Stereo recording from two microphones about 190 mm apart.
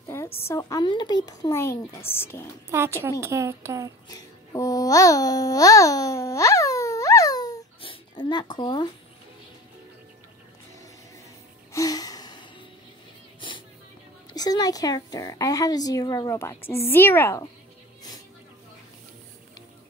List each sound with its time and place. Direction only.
0.4 s speech: 15° left (ahead or behind)
3.0 s a woman's voice: 15° right (ahead or behind)
4.1 s a child's voice: 20° left (ahead or behind)
11.7 s gasp: 20° left (ahead or behind)
14.3 s speech: 20° left (ahead or behind)